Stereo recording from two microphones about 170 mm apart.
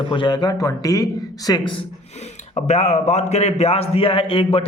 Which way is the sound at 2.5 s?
40° left (ahead or behind).